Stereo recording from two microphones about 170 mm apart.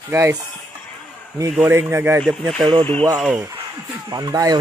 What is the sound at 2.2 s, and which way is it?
Speech, 5° left (ahead or behind).